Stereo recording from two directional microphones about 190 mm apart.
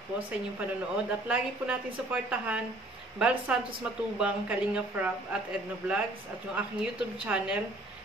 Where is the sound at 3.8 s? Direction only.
5° right (ahead or behind).